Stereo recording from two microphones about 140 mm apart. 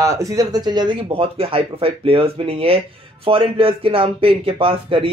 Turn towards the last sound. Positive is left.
turn(degrees=-40)  # may be behind; listen again after turning